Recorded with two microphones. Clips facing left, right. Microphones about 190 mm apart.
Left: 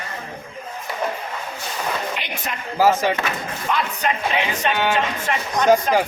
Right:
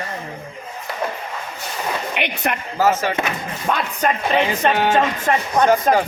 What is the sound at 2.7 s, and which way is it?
Speech, 15° left (ahead or behind).